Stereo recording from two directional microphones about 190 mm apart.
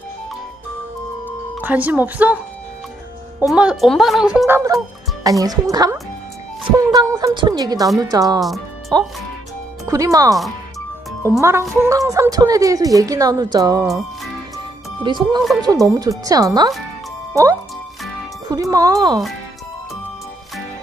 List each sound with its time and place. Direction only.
1.6 s speech: 10° right (ahead or behind)
3.4 s a woman's voice: 5° right (ahead or behind); by 8.4 s 20° right (ahead or behind)
8.4 s speech: centre (ahead or behind)
9.8 s speech: 15° right (ahead or behind)
11.7 s a woman's voice: 15° right (ahead or behind)
15.0 s a woman's voice: 25° right (ahead or behind)
18.5 s a woman's voice: 20° right (ahead or behind)